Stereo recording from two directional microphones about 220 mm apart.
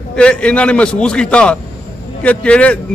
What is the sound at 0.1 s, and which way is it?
A man's voice, 5° left (ahead or behind).